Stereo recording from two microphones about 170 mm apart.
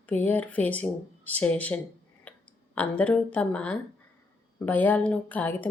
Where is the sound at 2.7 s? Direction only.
10° left (ahead or behind).